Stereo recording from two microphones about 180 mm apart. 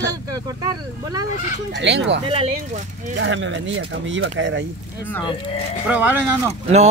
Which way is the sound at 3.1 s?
90° right.